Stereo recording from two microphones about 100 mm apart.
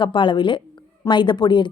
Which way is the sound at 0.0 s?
55° left (ahead or behind).